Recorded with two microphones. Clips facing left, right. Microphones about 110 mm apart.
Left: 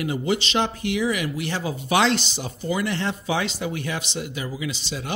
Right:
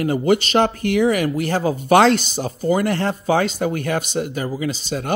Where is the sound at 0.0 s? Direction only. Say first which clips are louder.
Right 7 dB; 50° right (ahead or behind).